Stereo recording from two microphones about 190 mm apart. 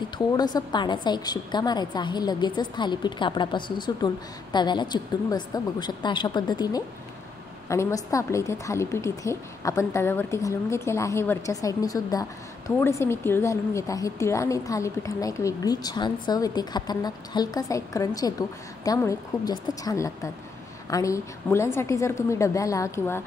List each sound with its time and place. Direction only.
0.4 s a woman's voice: 20° left (ahead or behind)